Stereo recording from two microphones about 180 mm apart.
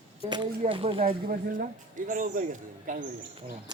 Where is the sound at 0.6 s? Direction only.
30° right (ahead or behind).